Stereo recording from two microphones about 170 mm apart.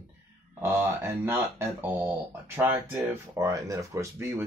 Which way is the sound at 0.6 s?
10° right (ahead or behind).